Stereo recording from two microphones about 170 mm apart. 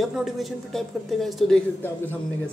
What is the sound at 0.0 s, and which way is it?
A woman's voice, centre (ahead or behind).